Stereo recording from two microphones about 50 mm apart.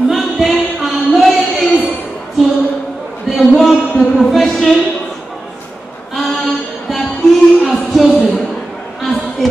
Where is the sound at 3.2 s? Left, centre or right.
Centre.